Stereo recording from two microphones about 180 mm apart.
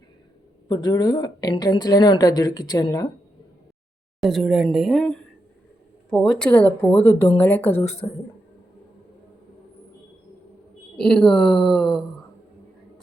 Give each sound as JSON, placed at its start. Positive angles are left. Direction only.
{"t": 0.7, "sound": "a woman's voice", "side_deg": 20}
{"t": 4.2, "sound": "a woman's voice", "side_deg": 0}
{"t": 10.9, "sound": "a woman's voice", "side_deg": 5}